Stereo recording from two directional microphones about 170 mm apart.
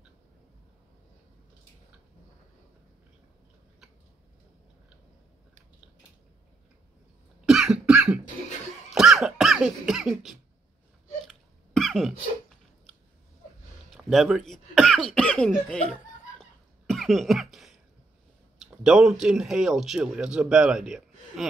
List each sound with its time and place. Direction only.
7.4 s cough: 5° right (ahead or behind)
13.8 s cough: centre (ahead or behind)
18.8 s a man's voice: 5° right (ahead or behind)